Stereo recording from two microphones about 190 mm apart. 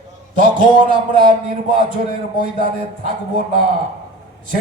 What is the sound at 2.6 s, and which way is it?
Speech, 45° right (ahead or behind).